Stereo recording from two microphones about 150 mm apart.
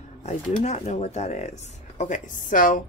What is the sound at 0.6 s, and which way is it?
Speech, 45° left (ahead or behind).